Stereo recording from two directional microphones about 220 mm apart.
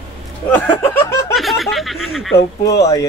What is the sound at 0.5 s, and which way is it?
Snicker, 10° left (ahead or behind).